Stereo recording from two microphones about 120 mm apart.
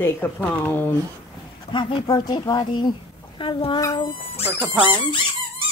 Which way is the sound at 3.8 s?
30° left (ahead or behind).